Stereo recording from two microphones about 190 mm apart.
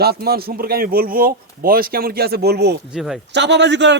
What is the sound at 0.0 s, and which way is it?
A man's voice, 55° right (ahead or behind).